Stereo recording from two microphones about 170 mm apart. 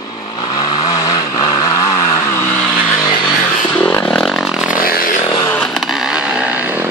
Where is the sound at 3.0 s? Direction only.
25° left (ahead or behind).